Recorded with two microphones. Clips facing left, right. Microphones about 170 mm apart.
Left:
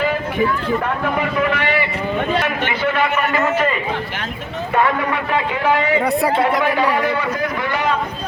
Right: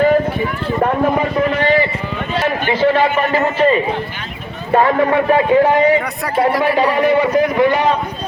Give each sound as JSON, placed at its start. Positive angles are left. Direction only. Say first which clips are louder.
{"t": 2.4, "sound": "a sound", "louder": "right 5 dB", "side_deg": -30}
{"t": 4.7, "sound": "speech", "louder": "right 6 dB", "side_deg": -30}
{"t": 6.7, "sound": "a man's voice", "louder": "right 5 dB", "side_deg": -15}